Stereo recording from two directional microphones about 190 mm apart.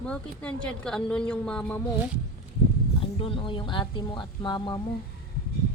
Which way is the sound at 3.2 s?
25° left (ahead or behind).